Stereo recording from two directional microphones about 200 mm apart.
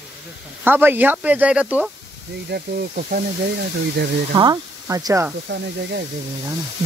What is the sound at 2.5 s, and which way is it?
Speech, 50° right (ahead or behind).